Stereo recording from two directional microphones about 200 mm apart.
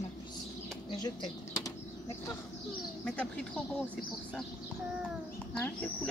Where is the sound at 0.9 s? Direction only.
20° left (ahead or behind).